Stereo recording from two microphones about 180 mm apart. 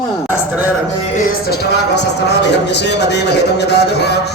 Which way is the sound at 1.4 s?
70° left (ahead or behind).